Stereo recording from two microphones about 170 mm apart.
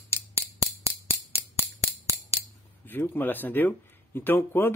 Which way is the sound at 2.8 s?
10° left (ahead or behind).